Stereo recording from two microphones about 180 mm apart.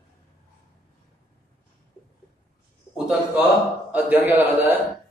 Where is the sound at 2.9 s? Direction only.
5° right (ahead or behind).